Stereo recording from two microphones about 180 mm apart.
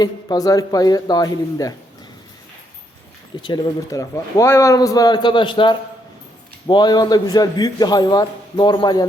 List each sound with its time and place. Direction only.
0.0 s a man's voice: 20° left (ahead or behind)
3.4 s a man's voice: 20° left (ahead or behind)